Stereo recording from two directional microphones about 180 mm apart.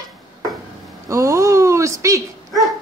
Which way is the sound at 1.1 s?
20° right (ahead or behind).